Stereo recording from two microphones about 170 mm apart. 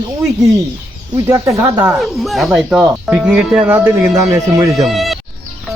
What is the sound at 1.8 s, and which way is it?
Speech, centre (ahead or behind).